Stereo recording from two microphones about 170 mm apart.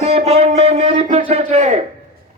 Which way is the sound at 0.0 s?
35° right (ahead or behind).